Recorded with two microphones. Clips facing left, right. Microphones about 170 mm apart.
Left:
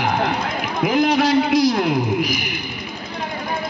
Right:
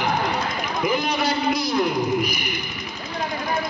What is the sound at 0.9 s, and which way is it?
A man's voice, 85° left.